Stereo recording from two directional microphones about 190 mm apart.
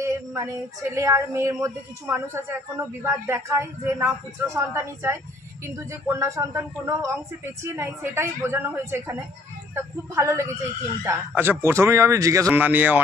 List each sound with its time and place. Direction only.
0.0 s female singing: 15° right (ahead or behind)
0.9 s a woman's voice: 15° right (ahead or behind)